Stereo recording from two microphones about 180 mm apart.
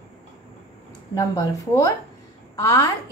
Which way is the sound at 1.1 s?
20° left (ahead or behind).